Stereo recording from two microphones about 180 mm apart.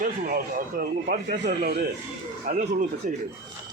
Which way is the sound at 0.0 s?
50° right (ahead or behind).